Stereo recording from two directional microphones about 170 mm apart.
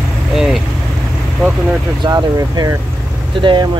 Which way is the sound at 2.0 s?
25° right (ahead or behind).